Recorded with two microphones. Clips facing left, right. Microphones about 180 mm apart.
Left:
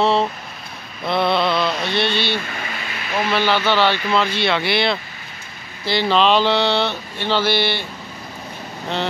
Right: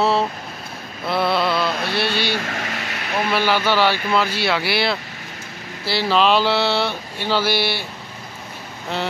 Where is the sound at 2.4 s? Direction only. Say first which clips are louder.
Right 2 dB; 75° right (ahead or behind).